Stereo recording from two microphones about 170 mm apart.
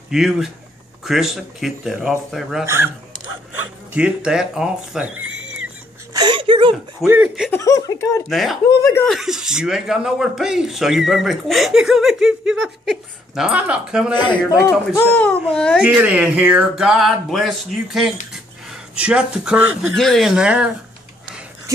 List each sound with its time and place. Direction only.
0.1 s speech: centre (ahead or behind)
2.6 s speech: 15° right (ahead or behind)
3.9 s speech: 5° right (ahead or behind)
6.1 s speech: 25° right (ahead or behind)
7.1 s speech: 5° right (ahead or behind)
7.5 s speech: 15° left (ahead or behind)
8.3 s speech: centre (ahead or behind)
14.1 s speech: 25° left (ahead or behind)
15.0 s speech: 10° left (ahead or behind)
15.8 s speech: 10° right (ahead or behind)